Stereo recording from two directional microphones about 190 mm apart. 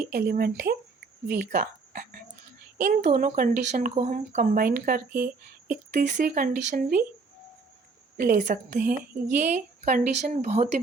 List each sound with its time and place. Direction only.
0.1 s a woman's voice: 55° right (ahead or behind)
8.1 s a woman's voice: 45° right (ahead or behind)